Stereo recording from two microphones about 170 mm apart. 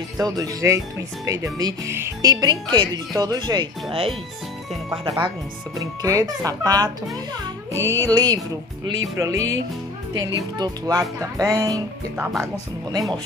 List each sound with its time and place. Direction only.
0.2 s speech: 20° right (ahead or behind)
8.8 s music: 15° right (ahead or behind)
10.1 s speech: 20° right (ahead or behind)